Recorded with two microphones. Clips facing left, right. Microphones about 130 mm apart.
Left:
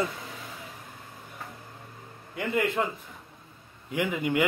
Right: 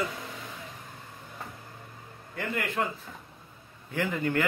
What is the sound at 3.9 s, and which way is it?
Speech, 15° left (ahead or behind).